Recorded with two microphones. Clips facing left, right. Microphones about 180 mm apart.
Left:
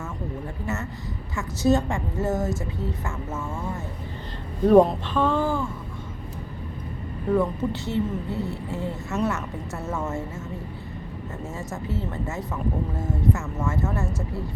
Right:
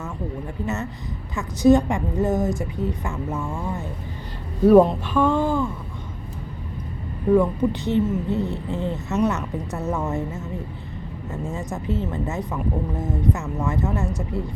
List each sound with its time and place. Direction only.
1.4 s a woman's voice: 15° right (ahead or behind)
4.6 s a woman's voice: 5° right (ahead or behind)
7.3 s speech: 15° right (ahead or behind)
11.4 s a woman's voice: 15° right (ahead or behind)